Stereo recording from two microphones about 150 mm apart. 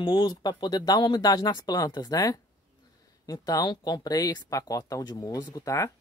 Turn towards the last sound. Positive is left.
turn(degrees=20)  # may be behind; listen again after turning